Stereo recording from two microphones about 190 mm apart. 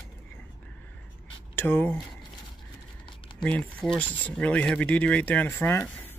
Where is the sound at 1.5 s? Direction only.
10° left (ahead or behind).